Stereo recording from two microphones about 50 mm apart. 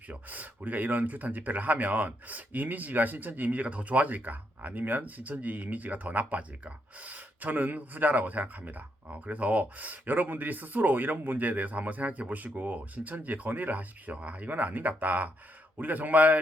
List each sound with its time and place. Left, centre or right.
0.1 s speech: right